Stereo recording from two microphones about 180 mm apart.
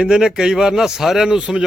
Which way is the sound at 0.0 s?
5° right (ahead or behind).